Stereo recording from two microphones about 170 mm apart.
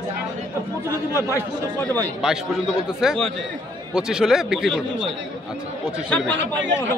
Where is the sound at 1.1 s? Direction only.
15° left (ahead or behind).